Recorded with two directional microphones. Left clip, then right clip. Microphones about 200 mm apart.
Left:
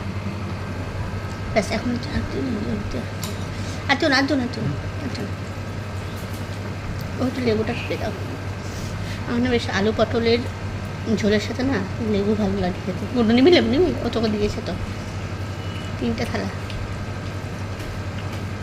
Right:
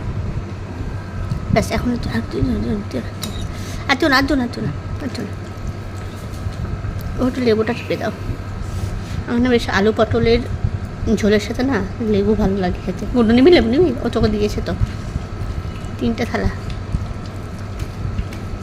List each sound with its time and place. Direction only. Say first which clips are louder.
1.5 s speech: right 3 dB; 20° right (ahead or behind)
3.8 s speech: right 4 dB; 20° right (ahead or behind)
7.2 s speech: right 6 dB; 30° right (ahead or behind)
9.3 s speech: right 6 dB; 25° right (ahead or behind)
16.1 s speech: right 5 dB; 25° right (ahead or behind)